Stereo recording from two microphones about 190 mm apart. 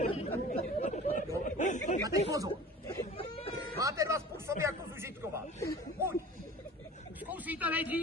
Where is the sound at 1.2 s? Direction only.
40° left (ahead or behind).